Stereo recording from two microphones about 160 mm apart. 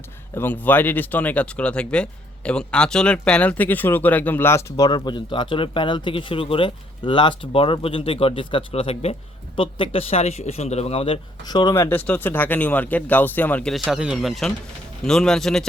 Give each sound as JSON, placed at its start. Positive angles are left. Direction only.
{"t": 0.3, "sound": "speech", "side_deg": 10}